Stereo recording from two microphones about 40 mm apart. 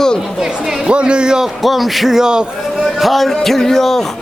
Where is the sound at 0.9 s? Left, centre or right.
Right.